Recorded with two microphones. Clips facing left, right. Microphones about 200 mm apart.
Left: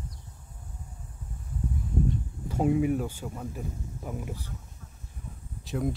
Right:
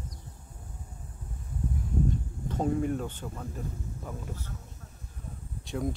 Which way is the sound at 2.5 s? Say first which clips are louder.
Left 4 dB; 10° left (ahead or behind).